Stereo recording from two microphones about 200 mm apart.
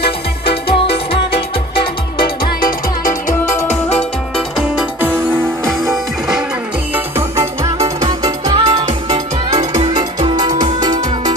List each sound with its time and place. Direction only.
2.1 s music: 50° left (ahead or behind)
4.6 s music: 5° right (ahead or behind)
7.2 s music: 15° right (ahead or behind)
8.8 s music: 35° right (ahead or behind)